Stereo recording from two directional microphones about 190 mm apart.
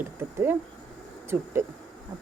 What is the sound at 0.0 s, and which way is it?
Speech, 10° right (ahead or behind).